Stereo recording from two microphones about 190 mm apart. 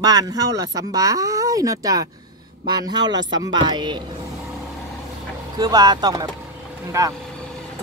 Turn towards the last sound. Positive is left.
turn(degrees=-15)  # may be behind; listen again after turning